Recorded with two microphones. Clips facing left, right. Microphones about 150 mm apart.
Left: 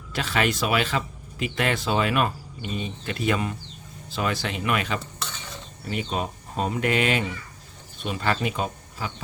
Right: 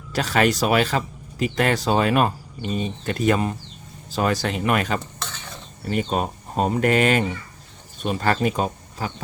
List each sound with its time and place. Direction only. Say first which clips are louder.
0.1 s speech: right 5 dB; 40° right (ahead or behind)